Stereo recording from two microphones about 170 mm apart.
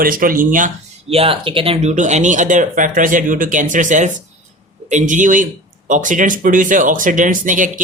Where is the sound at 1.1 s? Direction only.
35° right (ahead or behind).